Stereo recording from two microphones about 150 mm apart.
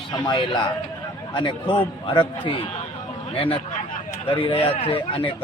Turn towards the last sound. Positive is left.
turn(degrees=35)  # may be behind; listen again after turning